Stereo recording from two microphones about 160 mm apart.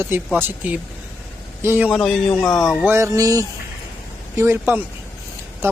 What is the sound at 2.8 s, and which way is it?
A man's voice, 15° right (ahead or behind).